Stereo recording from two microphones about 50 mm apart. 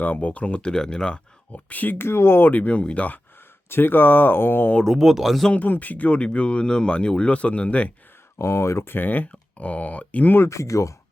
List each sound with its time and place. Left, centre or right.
0.0 s speech: left
0.7 s speech: centre
1.5 s speech: left
2.0 s speech: left
2.5 s speech: left
3.7 s speech: left
4.8 s speech: centre
5.5 s speech: left
6.1 s speech: left
8.4 s speech: left
8.9 s speech: left
10.3 s speech: left